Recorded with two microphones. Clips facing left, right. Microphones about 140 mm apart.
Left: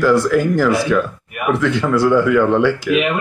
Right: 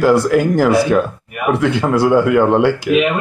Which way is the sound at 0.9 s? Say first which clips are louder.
Right 2 dB; 30° right (ahead or behind).